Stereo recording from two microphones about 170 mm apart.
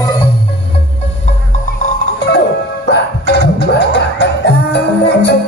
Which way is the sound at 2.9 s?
75° left (ahead or behind).